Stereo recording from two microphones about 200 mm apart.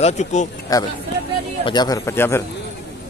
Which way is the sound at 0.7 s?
15° left (ahead or behind).